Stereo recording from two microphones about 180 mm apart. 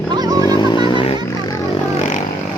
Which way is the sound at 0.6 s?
25° left (ahead or behind).